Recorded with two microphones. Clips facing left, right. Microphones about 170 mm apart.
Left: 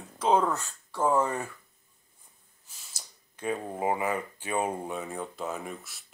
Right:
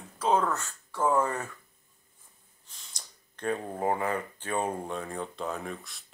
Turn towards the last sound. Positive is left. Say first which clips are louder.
# even
turn(degrees=5)  # may be behind; listen again after turning